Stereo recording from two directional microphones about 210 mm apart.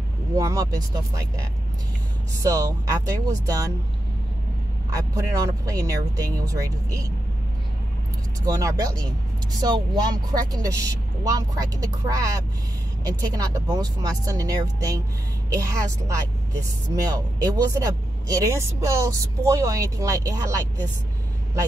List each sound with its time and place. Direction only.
0.4 s speech: 15° right (ahead or behind)
2.3 s speech: 15° right (ahead or behind)
4.9 s speech: 15° right (ahead or behind)
8.5 s speech: 15° right (ahead or behind)